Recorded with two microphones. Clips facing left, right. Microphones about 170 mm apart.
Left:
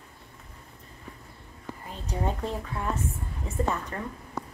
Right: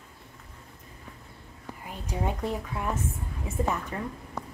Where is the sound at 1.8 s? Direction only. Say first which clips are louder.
Even; 10° right (ahead or behind).